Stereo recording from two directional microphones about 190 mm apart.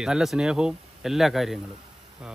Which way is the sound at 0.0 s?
Centre (ahead or behind).